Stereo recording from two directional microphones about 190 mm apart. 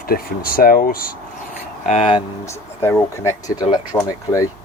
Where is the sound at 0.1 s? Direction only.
50° left (ahead or behind).